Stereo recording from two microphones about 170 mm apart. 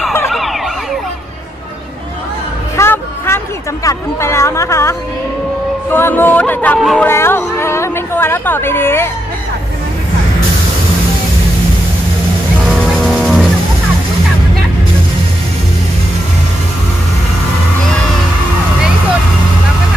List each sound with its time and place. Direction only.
0.3 s emergency vehicle: centre (ahead or behind)
2.8 s a sound: 15° left (ahead or behind)
5.9 s music: 10° left (ahead or behind)
6.8 s speech: centre (ahead or behind)
7.1 s a sound: 15° left (ahead or behind)
13.0 s music: 5° left (ahead or behind)